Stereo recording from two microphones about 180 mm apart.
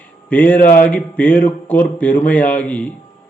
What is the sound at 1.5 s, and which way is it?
Speech, 10° left (ahead or behind).